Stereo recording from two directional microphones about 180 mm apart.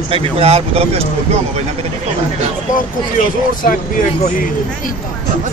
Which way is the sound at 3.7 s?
50° left (ahead or behind).